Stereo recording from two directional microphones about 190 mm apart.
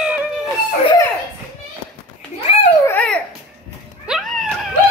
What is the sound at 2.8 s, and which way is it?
Dog, 5° left (ahead or behind).